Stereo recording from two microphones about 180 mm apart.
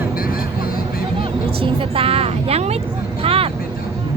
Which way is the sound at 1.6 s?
30° right (ahead or behind).